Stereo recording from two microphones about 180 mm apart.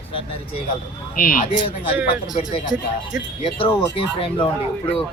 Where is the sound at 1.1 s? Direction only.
50° left (ahead or behind).